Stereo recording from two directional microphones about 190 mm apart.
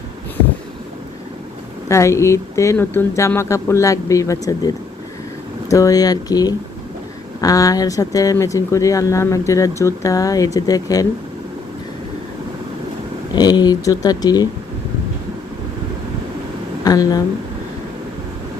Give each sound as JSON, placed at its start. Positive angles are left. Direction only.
{"t": 1.9, "sound": "speech", "side_deg": 15}
{"t": 13.3, "sound": "speech", "side_deg": 20}
{"t": 16.8, "sound": "speech", "side_deg": 20}